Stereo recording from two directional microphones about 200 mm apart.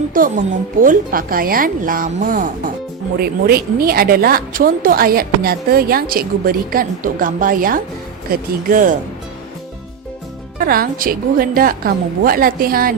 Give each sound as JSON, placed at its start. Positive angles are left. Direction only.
{"t": 0.1, "sound": "a woman's voice", "side_deg": -45}
{"t": 10.7, "sound": "a woman's voice", "side_deg": -45}